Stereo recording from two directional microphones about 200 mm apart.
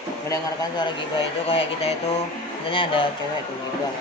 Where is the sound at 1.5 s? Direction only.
30° left (ahead or behind).